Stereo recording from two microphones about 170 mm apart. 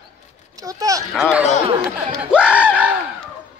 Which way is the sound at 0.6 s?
20° right (ahead or behind).